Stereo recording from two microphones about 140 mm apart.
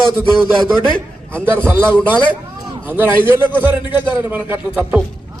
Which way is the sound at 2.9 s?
15° right (ahead or behind).